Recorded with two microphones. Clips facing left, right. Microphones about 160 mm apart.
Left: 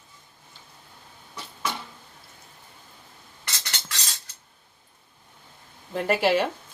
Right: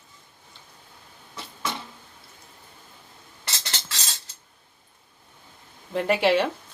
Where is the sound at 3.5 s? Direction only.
25° right (ahead or behind).